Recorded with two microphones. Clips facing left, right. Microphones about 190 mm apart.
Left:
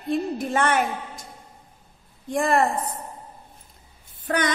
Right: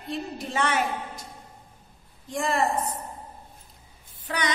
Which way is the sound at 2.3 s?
55° left (ahead or behind).